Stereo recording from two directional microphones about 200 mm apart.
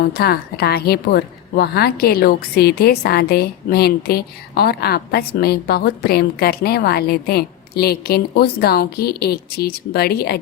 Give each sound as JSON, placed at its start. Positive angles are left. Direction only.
{"t": 0.0, "sound": "a woman's voice", "side_deg": 50}